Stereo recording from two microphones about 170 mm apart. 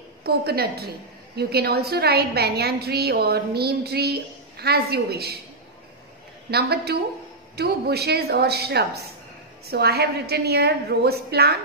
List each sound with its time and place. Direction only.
0.2 s a woman's voice: 65° right (ahead or behind)
6.5 s a woman's voice: 70° right (ahead or behind)